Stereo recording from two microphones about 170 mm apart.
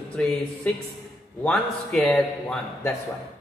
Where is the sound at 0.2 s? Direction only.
5° left (ahead or behind).